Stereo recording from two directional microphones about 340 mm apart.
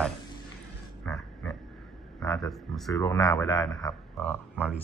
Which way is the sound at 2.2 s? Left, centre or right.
Centre.